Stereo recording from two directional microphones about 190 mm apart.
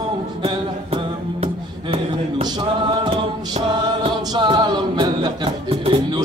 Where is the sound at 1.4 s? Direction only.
30° right (ahead or behind).